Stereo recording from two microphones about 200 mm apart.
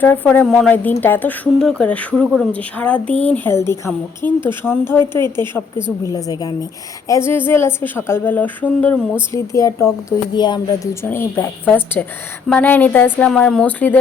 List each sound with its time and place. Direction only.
0.0 s speech: 10° left (ahead or behind)